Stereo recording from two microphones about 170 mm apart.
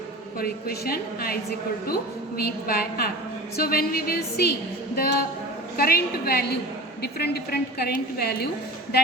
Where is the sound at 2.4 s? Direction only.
60° left (ahead or behind).